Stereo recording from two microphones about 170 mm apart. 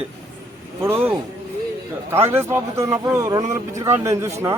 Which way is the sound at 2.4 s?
15° right (ahead or behind).